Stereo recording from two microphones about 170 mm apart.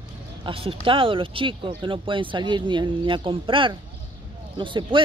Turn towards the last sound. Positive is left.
turn(degrees=-30)  # may be behind; listen again after turning